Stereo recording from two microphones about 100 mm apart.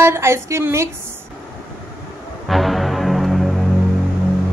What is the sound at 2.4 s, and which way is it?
Music, centre (ahead or behind).